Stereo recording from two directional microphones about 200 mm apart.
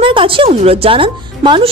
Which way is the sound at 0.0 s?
25° right (ahead or behind).